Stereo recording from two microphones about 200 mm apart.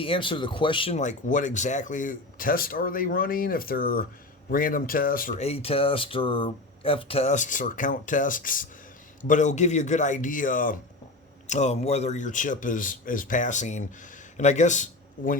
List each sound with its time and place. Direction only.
0.0 s speech: 25° left (ahead or behind); by 15.4 s 40° left (ahead or behind)